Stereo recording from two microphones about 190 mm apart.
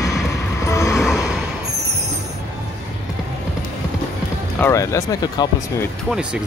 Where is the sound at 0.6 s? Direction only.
15° left (ahead or behind).